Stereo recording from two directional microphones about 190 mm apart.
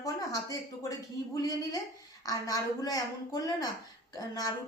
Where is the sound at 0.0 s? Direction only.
20° left (ahead or behind).